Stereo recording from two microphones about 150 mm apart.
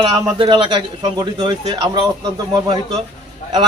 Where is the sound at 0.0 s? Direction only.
35° right (ahead or behind).